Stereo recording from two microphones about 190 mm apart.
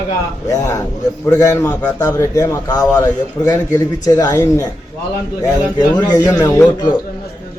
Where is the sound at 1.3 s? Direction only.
15° left (ahead or behind).